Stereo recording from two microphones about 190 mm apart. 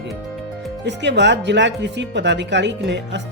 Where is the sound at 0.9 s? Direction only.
70° right (ahead or behind).